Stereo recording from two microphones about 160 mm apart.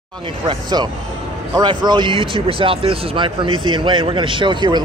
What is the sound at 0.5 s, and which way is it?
Speech, 25° right (ahead or behind).